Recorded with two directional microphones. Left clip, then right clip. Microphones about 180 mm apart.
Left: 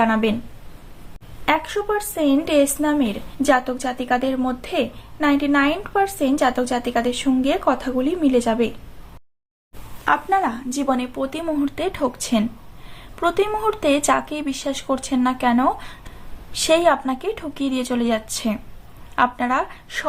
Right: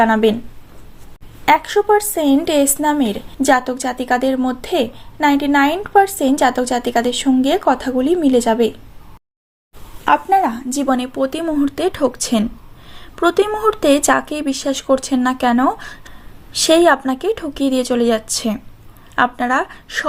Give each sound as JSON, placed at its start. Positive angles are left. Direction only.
{"t": 0.0, "sound": "a woman's voice", "side_deg": -35}
{"t": 1.5, "sound": "a woman's voice", "side_deg": -35}
{"t": 10.0, "sound": "a woman's voice", "side_deg": -30}